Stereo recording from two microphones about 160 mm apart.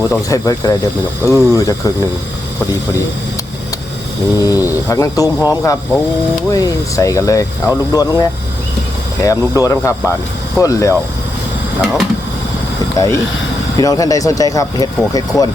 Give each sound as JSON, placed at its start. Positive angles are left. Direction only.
{"t": 0.1, "sound": "speech", "side_deg": 20}
{"t": 4.4, "sound": "speech", "side_deg": 20}
{"t": 11.8, "sound": "speech", "side_deg": 0}
{"t": 13.0, "sound": "speech", "side_deg": 20}